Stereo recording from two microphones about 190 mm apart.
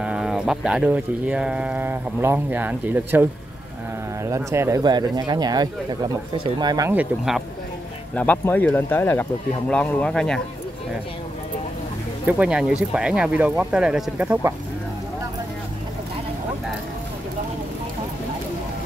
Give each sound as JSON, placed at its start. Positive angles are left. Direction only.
{"t": 0.0, "sound": "speech", "side_deg": -5}
{"t": 8.1, "sound": "speech", "side_deg": 5}
{"t": 12.3, "sound": "speech", "side_deg": -5}